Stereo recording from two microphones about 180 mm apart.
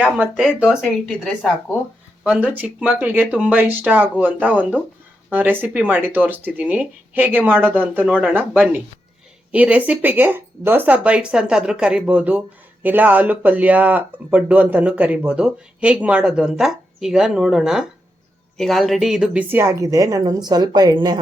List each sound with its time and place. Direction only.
0.0 s a woman's voice: 5° right (ahead or behind); by 21.2 s 20° right (ahead or behind)